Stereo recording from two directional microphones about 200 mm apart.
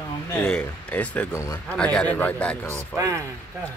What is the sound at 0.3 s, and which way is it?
Speech, 5° left (ahead or behind).